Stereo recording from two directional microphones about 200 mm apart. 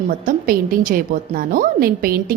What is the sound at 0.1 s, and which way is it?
A woman's voice, 45° right (ahead or behind).